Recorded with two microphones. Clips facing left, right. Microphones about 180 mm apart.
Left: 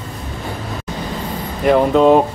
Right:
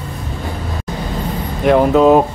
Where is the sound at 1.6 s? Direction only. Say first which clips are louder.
Right 1 dB; centre (ahead or behind).